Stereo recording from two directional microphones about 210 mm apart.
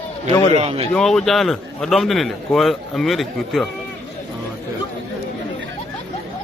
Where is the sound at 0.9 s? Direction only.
5° left (ahead or behind).